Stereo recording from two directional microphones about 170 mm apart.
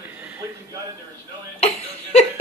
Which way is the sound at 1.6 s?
40° left (ahead or behind).